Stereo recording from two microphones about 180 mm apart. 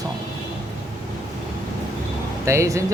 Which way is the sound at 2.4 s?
15° right (ahead or behind).